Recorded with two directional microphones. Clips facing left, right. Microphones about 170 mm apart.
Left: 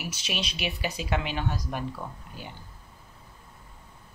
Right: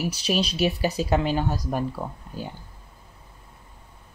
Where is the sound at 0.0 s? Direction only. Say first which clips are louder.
Right 9 dB; 35° right (ahead or behind).